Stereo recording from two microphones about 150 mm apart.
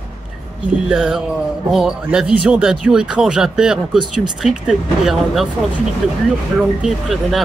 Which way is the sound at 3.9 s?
30° right (ahead or behind).